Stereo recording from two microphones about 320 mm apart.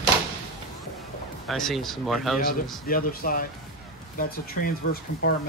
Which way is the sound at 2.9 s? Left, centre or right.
Left.